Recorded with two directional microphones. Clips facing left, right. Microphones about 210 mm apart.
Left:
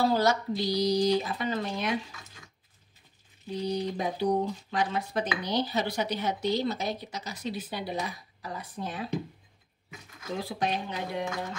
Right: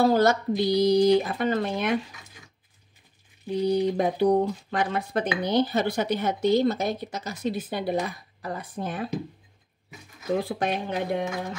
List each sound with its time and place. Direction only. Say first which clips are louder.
0.0 s speech: right 5 dB; 50° right (ahead or behind)
3.4 s speech: right 7 dB; 55° right (ahead or behind)
10.5 s speech: right 4 dB; 55° right (ahead or behind)